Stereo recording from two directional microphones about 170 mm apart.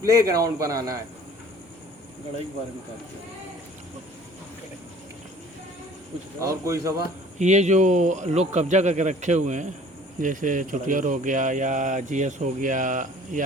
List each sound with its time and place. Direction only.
0.0 s a man's voice: 20° right (ahead or behind)
6.4 s a man's voice: 20° right (ahead or behind)
7.3 s speech: 45° right (ahead or behind)